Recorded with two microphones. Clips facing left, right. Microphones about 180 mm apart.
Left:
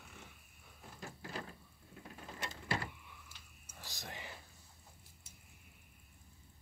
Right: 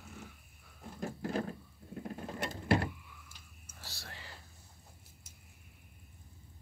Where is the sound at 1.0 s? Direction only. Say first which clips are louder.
Right 11 dB; 50° right (ahead or behind).